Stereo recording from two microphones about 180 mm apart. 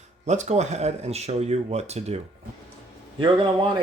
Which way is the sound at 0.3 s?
40° right (ahead or behind).